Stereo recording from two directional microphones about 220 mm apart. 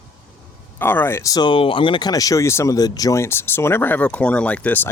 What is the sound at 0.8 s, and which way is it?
Speech, 10° left (ahead or behind).